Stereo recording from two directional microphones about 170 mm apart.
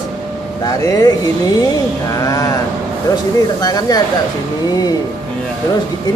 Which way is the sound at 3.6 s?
20° left (ahead or behind).